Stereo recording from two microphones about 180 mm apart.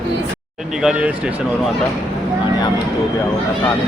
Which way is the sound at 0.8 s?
5° right (ahead or behind).